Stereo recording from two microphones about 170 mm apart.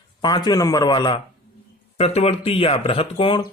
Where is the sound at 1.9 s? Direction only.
35° left (ahead or behind).